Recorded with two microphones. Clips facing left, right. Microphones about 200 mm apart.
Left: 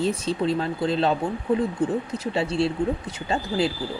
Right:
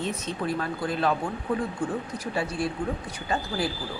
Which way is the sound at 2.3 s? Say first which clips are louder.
Left 5 dB; 25° left (ahead or behind).